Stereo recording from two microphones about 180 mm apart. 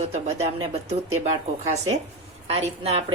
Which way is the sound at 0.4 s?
35° right (ahead or behind).